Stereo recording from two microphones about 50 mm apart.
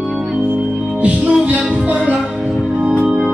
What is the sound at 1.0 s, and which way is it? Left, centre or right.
Music, right.